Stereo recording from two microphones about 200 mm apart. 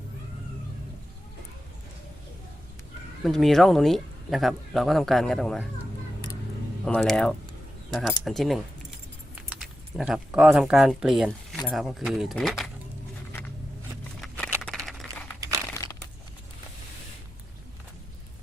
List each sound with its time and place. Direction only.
3.2 s speech: centre (ahead or behind)
6.8 s speech: 5° left (ahead or behind)
14.2 s a sound: 5° left (ahead or behind)
15.4 s crumpling: 15° right (ahead or behind)
15.7 s crumpling: 15° left (ahead or behind)